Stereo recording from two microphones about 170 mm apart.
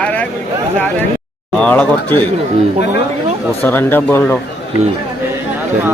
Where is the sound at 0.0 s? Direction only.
10° left (ahead or behind).